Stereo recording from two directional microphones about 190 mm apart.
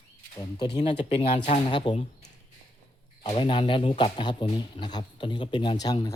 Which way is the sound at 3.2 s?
25° left (ahead or behind).